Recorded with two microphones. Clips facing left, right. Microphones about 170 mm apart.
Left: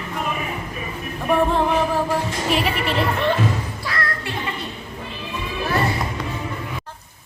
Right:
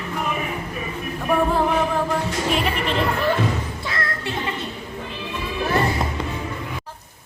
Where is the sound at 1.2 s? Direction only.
Centre (ahead or behind).